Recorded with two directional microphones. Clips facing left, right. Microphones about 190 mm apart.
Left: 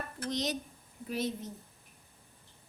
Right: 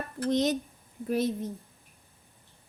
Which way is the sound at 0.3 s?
55° right (ahead or behind).